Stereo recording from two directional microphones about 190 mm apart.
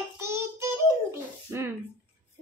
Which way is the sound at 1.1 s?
15° right (ahead or behind).